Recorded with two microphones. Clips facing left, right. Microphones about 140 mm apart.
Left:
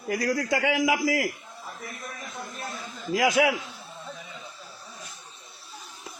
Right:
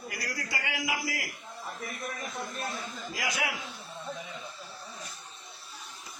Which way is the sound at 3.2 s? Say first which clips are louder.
Left 12 dB; 90° left.